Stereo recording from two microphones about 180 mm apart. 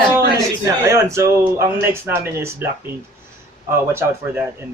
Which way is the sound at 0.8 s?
15° right (ahead or behind).